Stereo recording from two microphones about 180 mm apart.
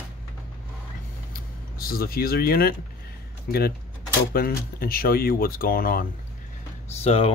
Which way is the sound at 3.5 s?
55° left (ahead or behind).